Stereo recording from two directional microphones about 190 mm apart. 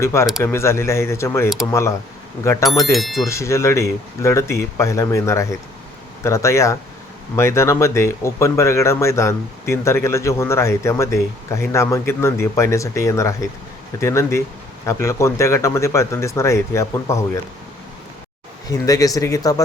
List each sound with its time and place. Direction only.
0.0 s speech: 15° left (ahead or behind)
2.6 s speech: centre (ahead or behind)
3.2 s speech: 15° left (ahead or behind)
18.7 s speech: 20° left (ahead or behind)